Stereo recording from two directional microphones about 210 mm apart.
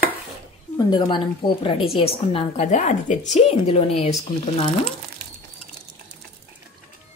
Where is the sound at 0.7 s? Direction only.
20° left (ahead or behind).